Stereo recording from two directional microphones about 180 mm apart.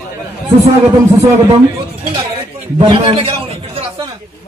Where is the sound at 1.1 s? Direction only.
15° right (ahead or behind).